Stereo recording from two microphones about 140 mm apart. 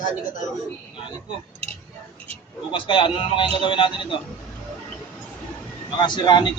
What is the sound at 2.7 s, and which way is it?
Speech, 35° left (ahead or behind).